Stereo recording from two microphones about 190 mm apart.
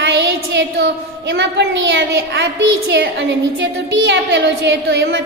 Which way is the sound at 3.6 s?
65° right (ahead or behind).